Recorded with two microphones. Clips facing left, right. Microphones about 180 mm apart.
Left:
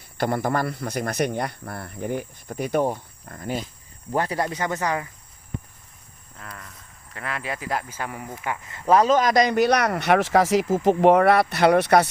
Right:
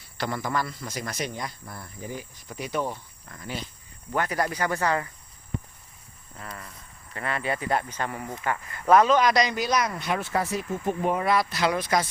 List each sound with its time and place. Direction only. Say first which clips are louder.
0.2 s speech: left 5 dB; 55° left (ahead or behind)
4.1 s speech: left 2 dB; 30° left (ahead or behind); by 5.0 s 15° left (ahead or behind)
6.4 s speech: right 1 dB; centre (ahead or behind)
8.6 s speech: left 1 dB; 20° left (ahead or behind); by 12.0 s 65° left (ahead or behind)